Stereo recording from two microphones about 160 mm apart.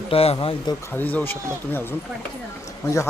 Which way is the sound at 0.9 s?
10° left (ahead or behind).